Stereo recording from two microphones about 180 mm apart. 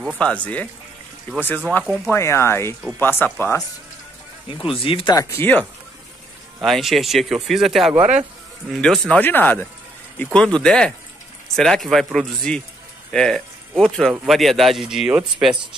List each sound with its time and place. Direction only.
0.2 s speech: 5° left (ahead or behind)
4.6 s speech: 30° left (ahead or behind); by 5.7 s 10° left (ahead or behind)
6.6 s speech: centre (ahead or behind)